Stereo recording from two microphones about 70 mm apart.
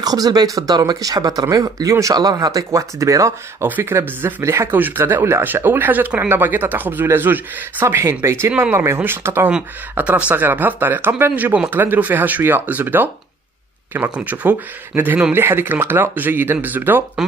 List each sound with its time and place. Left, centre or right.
0.0 s speech: right
3.6 s speech: right
4.6 s speech: right
7.8 s speech: right
8.5 s speech: right
9.9 s speech: centre